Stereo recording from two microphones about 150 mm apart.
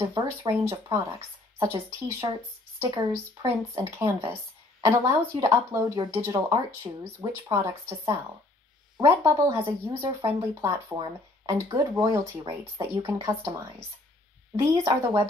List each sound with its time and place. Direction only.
0.0 s speech: 25° right (ahead or behind)